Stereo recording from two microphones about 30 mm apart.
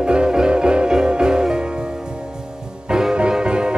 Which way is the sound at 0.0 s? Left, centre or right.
Right.